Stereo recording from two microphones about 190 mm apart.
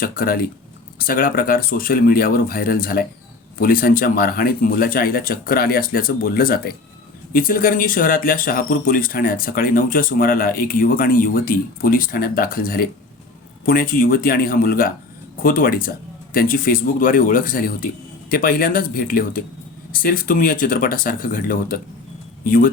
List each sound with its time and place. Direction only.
0.0 s speech: 50° left (ahead or behind)